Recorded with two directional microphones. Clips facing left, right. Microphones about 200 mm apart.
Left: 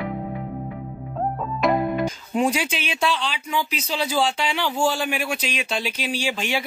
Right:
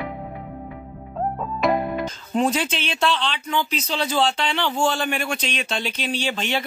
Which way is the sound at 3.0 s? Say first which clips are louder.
Right 2 dB; centre (ahead or behind).